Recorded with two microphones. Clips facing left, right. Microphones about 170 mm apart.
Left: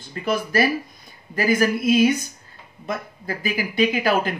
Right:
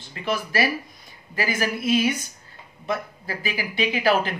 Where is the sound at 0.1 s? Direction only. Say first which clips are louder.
Left 4 dB; 40° left (ahead or behind).